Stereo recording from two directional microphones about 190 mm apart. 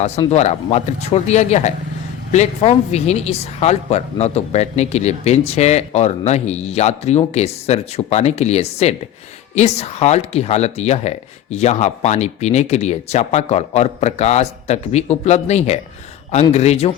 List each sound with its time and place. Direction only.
0.3 s speech: 35° left (ahead or behind)